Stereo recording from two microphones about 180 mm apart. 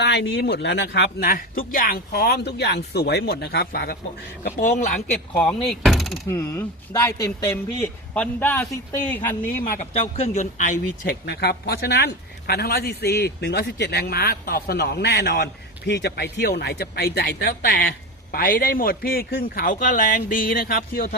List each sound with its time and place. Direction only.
0.0 s speech: 70° left (ahead or behind)
4.4 s speech: 45° left (ahead or behind)
5.3 s speech: 5° left (ahead or behind)
6.3 s a man's voice: 10° left (ahead or behind)
10.2 s speech: 40° left (ahead or behind); by 21.2 s 55° left (ahead or behind)